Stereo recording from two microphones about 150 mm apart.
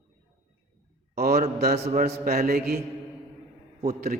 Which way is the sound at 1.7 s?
50° right (ahead or behind).